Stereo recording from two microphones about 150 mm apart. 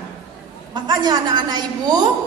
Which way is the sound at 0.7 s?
30° right (ahead or behind).